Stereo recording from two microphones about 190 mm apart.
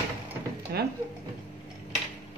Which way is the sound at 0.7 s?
60° right (ahead or behind).